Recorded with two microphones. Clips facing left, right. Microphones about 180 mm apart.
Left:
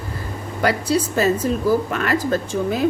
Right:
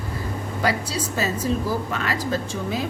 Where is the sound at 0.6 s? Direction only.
55° left (ahead or behind).